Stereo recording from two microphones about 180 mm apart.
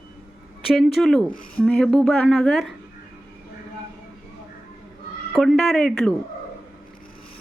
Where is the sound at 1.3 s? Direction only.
50° left (ahead or behind).